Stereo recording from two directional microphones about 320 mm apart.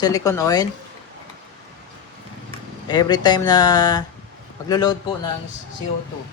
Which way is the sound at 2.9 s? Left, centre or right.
Centre.